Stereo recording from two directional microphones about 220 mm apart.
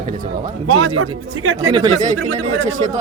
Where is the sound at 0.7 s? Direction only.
70° right (ahead or behind).